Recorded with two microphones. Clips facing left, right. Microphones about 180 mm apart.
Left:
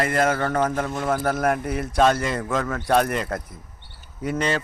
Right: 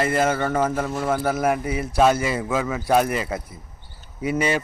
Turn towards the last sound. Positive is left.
turn(degrees=-10)  # may be behind; listen again after turning